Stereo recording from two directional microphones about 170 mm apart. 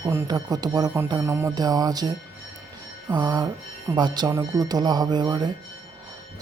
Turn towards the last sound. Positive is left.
turn(degrees=-25)  # may be behind; listen again after turning